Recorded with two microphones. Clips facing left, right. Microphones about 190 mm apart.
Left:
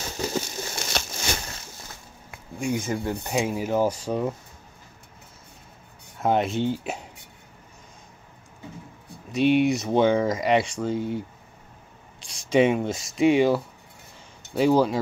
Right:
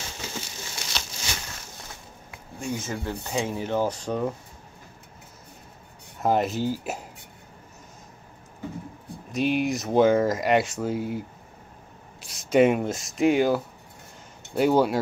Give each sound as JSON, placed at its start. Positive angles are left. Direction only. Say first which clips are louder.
{"t": 0.3, "sound": "crumpling", "louder": "left 8 dB", "side_deg": 45}
{"t": 2.6, "sound": "speech", "louder": "left 4 dB", "side_deg": 10}
{"t": 6.2, "sound": "speech", "louder": "left 1 dB", "side_deg": 0}
{"t": 9.3, "sound": "speech", "louder": "left 4 dB", "side_deg": 0}